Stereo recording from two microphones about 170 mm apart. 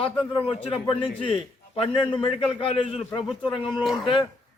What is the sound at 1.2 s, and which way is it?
A man's voice, 30° left (ahead or behind).